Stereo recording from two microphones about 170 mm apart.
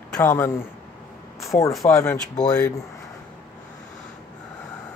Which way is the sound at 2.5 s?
20° left (ahead or behind).